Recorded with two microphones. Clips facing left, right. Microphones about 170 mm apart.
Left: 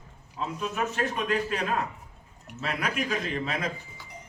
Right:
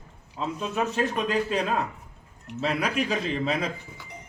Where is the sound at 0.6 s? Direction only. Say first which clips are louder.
Right 3 dB; 30° right (ahead or behind).